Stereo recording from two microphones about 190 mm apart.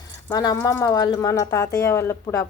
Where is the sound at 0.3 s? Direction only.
15° left (ahead or behind).